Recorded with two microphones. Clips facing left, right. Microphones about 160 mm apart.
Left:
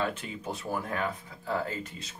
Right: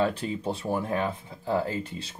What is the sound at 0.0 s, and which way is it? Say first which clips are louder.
Speech: right 6 dB; 35° right (ahead or behind).